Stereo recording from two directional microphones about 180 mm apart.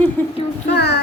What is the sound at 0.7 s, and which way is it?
Child singing, 65° left (ahead or behind).